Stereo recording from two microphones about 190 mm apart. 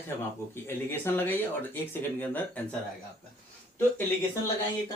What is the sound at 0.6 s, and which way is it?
Speech, 10° left (ahead or behind).